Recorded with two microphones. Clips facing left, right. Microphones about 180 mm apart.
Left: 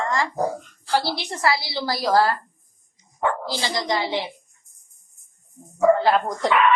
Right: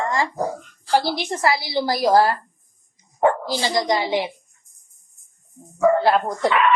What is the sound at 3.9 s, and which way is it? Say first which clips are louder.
Speech: right 3 dB; 15° right (ahead or behind).